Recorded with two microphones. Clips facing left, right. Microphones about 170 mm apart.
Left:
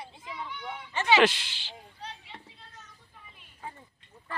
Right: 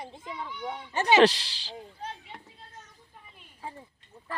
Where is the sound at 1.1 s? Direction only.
40° right (ahead or behind).